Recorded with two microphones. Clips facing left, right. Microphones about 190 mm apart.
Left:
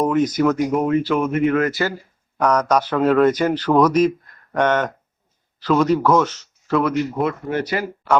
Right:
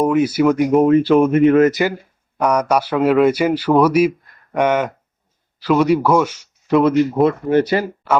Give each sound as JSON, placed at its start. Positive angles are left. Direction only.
{"t": 0.0, "sound": "speech", "side_deg": -10}
{"t": 0.7, "sound": "speech", "side_deg": -25}
{"t": 2.4, "sound": "speech", "side_deg": -10}
{"t": 7.2, "sound": "speech", "side_deg": -30}